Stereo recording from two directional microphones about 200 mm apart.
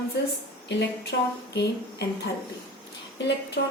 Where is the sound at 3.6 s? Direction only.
55° left (ahead or behind).